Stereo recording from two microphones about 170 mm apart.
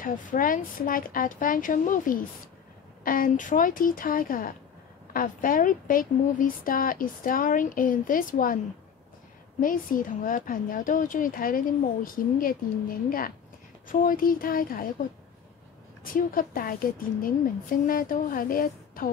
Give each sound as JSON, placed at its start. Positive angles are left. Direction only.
{"t": 0.0, "sound": "a woman's voice", "side_deg": 55}
{"t": 9.6, "sound": "a woman's voice", "side_deg": 55}